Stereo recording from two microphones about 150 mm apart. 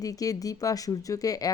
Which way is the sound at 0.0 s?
25° left (ahead or behind).